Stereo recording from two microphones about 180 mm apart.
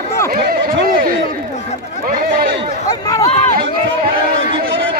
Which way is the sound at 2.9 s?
20° left (ahead or behind).